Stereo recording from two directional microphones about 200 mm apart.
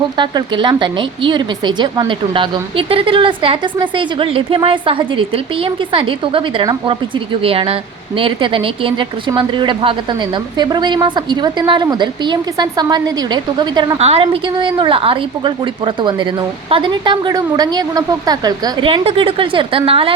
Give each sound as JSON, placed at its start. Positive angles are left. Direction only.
{"t": 0.2, "sound": "speech", "side_deg": -25}